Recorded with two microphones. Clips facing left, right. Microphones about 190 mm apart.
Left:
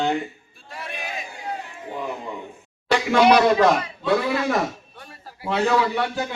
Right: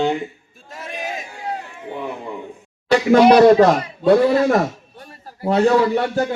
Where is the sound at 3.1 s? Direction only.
40° right (ahead or behind).